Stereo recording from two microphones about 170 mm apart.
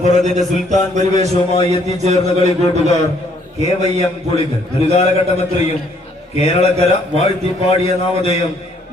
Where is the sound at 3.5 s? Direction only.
40° right (ahead or behind).